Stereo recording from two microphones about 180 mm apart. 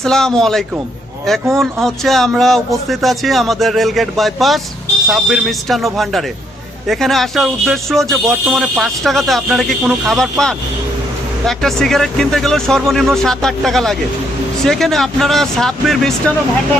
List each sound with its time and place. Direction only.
0.0 s speech: 5° left (ahead or behind)